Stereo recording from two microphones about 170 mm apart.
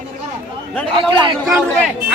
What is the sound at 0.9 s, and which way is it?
Speech, 30° right (ahead or behind).